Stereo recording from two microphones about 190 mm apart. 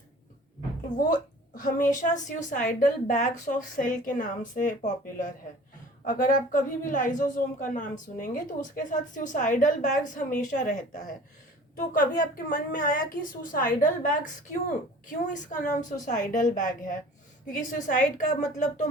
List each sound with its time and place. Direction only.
0.9 s a woman's voice: 45° left (ahead or behind)
6.1 s a woman's voice: 45° left (ahead or behind)